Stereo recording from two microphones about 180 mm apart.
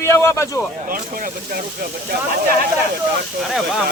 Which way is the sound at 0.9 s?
50° right (ahead or behind).